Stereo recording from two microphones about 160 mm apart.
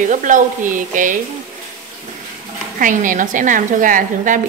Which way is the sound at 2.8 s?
55° right (ahead or behind).